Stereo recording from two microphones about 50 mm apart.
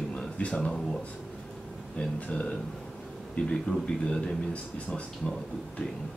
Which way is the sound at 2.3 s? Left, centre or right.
Left.